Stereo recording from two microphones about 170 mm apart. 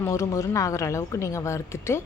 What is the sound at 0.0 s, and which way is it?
A woman's voice, 15° left (ahead or behind).